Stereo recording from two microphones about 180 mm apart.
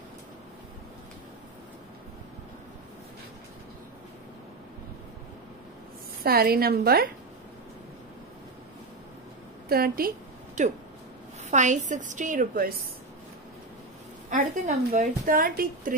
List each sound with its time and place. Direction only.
6.2 s a woman's voice: 60° right (ahead or behind)
9.7 s a sound: 55° right (ahead or behind)
11.5 s speech: 40° right (ahead or behind)
14.3 s speech: 45° right (ahead or behind)